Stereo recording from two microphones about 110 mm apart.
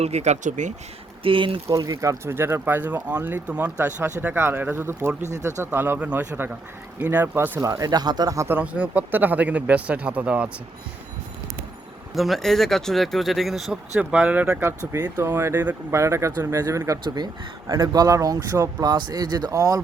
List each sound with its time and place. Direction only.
0.0 s speech: 85° right
1.2 s speech: 55° right (ahead or behind)
1.6 s speech: 30° right (ahead or behind)
7.6 s speech: 35° right (ahead or behind)
8.4 s speech: 15° right (ahead or behind)
12.1 s speech: centre (ahead or behind)
14.9 s speech: 35° right (ahead or behind)
15.2 s speech: 25° right (ahead or behind)